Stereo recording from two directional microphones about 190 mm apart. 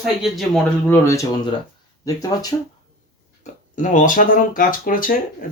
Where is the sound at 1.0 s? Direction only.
15° left (ahead or behind).